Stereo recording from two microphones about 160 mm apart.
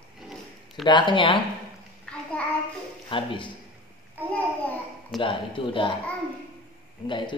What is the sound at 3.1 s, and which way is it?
Speech, 30° left (ahead or behind).